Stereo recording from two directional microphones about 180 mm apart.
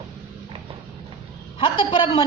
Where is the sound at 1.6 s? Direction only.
25° left (ahead or behind).